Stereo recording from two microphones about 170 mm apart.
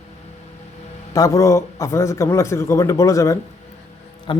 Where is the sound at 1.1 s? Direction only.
20° left (ahead or behind).